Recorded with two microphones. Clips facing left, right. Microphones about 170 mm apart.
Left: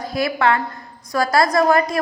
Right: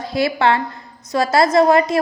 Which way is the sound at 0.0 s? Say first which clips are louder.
Right 2 dB; 25° right (ahead or behind).